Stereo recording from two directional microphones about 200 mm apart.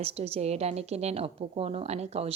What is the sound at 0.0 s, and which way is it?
A woman's voice, 30° right (ahead or behind).